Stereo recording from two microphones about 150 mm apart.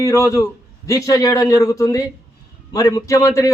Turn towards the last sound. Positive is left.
turn(degrees=20)  # may be behind; listen again after turning